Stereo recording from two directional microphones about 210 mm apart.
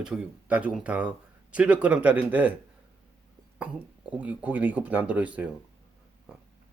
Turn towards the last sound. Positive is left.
turn(degrees=-5)  # may be behind; listen again after turning